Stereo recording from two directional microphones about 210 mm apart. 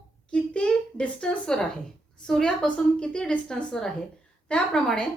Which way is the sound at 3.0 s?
5° left (ahead or behind).